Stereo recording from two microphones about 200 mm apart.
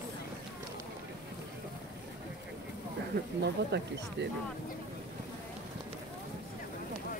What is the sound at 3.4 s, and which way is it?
Speech, 60° right (ahead or behind).